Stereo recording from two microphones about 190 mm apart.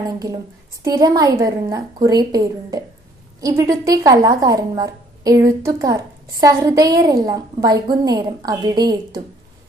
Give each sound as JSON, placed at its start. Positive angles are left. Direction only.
{"t": 0.8, "sound": "a woman's voice", "side_deg": -20}